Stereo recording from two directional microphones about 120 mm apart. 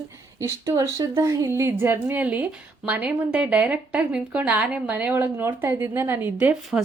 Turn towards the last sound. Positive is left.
turn(degrees=-10)  # may be behind; listen again after turning